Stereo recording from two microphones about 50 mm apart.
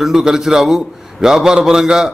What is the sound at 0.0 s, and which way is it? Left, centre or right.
A man's voice, centre.